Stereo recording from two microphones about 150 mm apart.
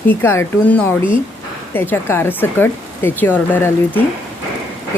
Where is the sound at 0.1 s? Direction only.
15° left (ahead or behind).